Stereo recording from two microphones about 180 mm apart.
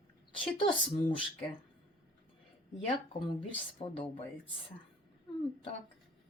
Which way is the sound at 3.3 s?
30° left (ahead or behind).